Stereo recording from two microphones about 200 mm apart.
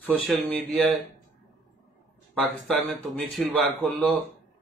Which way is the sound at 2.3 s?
5° left (ahead or behind).